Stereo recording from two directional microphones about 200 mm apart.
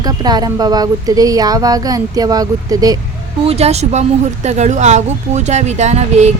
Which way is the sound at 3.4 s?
30° right (ahead or behind).